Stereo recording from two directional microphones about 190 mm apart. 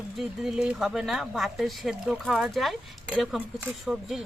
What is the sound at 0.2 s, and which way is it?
Speech, centre (ahead or behind).